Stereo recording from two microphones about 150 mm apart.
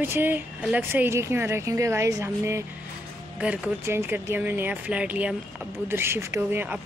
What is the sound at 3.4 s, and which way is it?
Speech, 10° right (ahead or behind).